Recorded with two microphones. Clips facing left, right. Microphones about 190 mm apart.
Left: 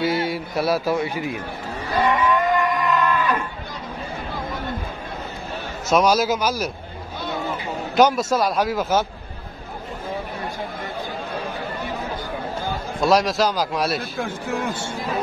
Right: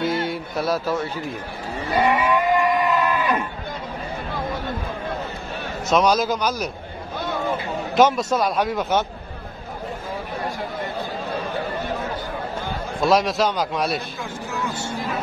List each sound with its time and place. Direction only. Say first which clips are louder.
0.0 s speech: left 1 dB; 5° left (ahead or behind)
2.0 s a sound: even; 10° right (ahead or behind)
3.0 s goat: even; 15° right (ahead or behind)
5.9 s a man's voice: left 1 dB; 5° left (ahead or behind)
7.9 s a man's voice: even; centre (ahead or behind)
13.0 s a man's voice: even; centre (ahead or behind)
14.1 s speech: left 4 dB; 50° left (ahead or behind)